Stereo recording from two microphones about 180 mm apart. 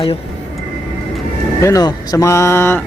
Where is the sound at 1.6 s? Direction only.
20° left (ahead or behind).